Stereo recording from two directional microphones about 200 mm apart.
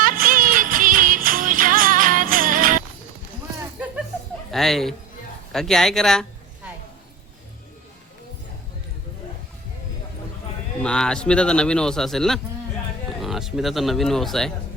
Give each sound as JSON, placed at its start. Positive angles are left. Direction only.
{"t": 0.0, "sound": "music", "side_deg": -45}
{"t": 4.5, "sound": "a man's voice", "side_deg": 0}
{"t": 10.8, "sound": "a man's voice", "side_deg": 5}